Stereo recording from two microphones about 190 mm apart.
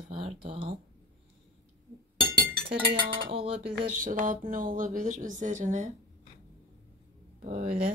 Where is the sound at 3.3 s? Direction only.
30° right (ahead or behind).